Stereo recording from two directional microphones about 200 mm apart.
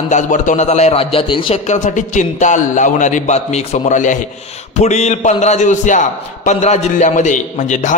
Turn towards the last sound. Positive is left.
turn(degrees=40)  # may be behind; listen again after turning